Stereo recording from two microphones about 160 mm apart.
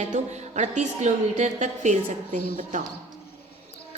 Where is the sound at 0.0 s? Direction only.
45° right (ahead or behind).